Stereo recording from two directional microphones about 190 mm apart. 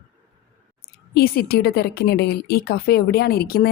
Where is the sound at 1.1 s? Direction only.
55° left (ahead or behind).